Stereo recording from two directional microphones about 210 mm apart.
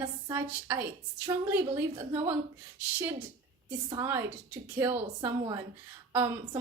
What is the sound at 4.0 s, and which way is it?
A woman's voice, 10° right (ahead or behind).